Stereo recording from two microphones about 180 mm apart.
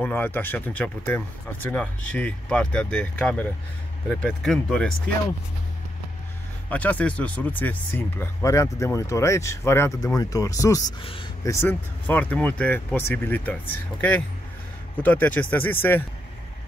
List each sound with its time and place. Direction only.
0.0 s speech: 10° left (ahead or behind)
6.7 s speech: 10° left (ahead or behind)
11.0 s speech: 30° left (ahead or behind)
11.4 s speech: 10° left (ahead or behind)